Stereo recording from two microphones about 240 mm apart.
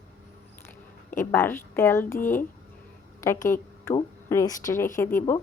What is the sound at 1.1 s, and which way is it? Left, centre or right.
Speech, centre.